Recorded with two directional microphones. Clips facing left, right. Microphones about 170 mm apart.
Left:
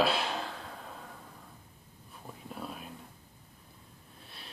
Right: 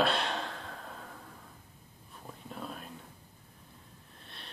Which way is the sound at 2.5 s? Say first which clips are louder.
Even; 5° left (ahead or behind).